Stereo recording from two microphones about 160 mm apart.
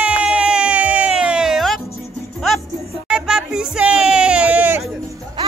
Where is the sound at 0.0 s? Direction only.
5° right (ahead or behind).